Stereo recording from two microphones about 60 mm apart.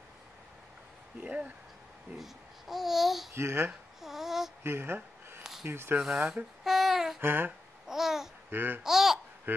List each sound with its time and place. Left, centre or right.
1.2 s speech: right
2.1 s speech: centre
3.3 s speech: right
4.0 s a sound: centre
4.6 s speech: right
5.4 s a sound: centre
5.7 s speech: right
6.0 s a sound: centre
7.2 s speech: right
7.9 s babbling: centre
8.5 s speech: right
8.8 s babbling: centre